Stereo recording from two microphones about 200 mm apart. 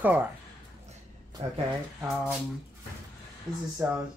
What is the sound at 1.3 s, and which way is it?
Speech, 20° right (ahead or behind).